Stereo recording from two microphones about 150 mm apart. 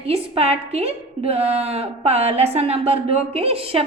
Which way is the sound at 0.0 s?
40° right (ahead or behind).